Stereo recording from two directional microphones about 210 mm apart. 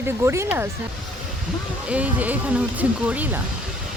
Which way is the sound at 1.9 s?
5° right (ahead or behind).